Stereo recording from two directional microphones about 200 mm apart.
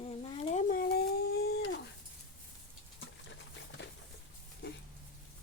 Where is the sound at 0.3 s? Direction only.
40° left (ahead or behind).